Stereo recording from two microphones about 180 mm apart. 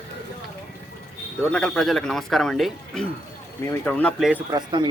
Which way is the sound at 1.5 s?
5° left (ahead or behind).